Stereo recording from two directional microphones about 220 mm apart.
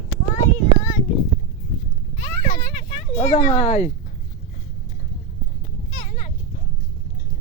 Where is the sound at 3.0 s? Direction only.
25° left (ahead or behind).